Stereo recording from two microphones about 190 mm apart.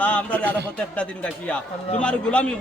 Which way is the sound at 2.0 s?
5° left (ahead or behind).